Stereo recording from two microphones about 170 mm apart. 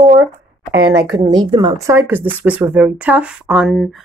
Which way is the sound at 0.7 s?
75° right (ahead or behind).